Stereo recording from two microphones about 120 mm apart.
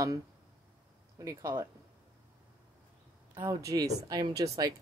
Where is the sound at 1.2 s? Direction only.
25° right (ahead or behind).